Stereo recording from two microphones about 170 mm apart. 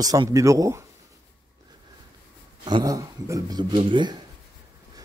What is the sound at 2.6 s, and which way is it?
A man's voice, 25° right (ahead or behind).